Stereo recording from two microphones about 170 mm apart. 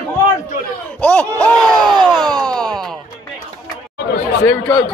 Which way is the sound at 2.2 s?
5° left (ahead or behind).